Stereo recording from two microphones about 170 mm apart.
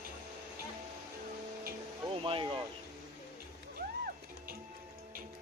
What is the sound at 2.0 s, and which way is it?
Speech, 30° right (ahead or behind).